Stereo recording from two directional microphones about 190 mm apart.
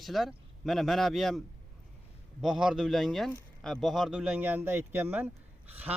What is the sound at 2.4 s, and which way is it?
A man's voice, 5° right (ahead or behind).